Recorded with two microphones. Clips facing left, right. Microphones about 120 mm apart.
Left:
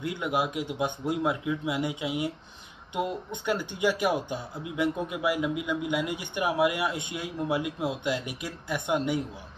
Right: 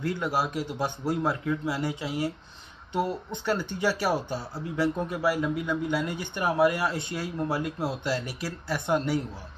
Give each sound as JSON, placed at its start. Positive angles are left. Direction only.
{"t": 0.0, "sound": "speech", "side_deg": 15}